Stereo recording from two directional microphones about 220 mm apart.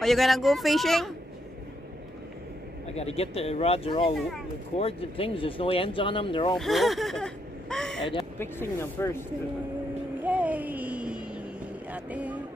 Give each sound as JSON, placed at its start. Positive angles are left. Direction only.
{"t": 0.0, "sound": "speech", "side_deg": 0}
{"t": 2.9, "sound": "speech", "side_deg": 30}
{"t": 6.5, "sound": "speech", "side_deg": 0}
{"t": 8.0, "sound": "speech", "side_deg": 20}
{"t": 8.4, "sound": "speech", "side_deg": 10}
{"t": 10.2, "sound": "a sound", "side_deg": -5}